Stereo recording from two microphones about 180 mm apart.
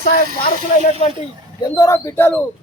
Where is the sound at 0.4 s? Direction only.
40° left (ahead or behind).